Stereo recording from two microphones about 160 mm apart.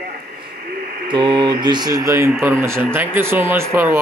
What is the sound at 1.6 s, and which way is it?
Speech, 25° right (ahead or behind).